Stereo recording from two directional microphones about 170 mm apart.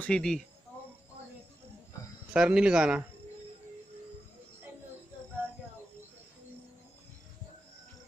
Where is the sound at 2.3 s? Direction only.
5° right (ahead or behind).